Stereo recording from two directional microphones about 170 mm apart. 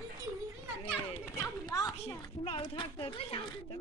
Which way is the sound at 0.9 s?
15° left (ahead or behind).